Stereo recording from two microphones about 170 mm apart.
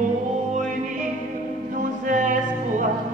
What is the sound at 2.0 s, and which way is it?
Music, 50° right (ahead or behind).